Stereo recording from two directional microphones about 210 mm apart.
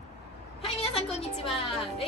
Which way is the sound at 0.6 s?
25° left (ahead or behind).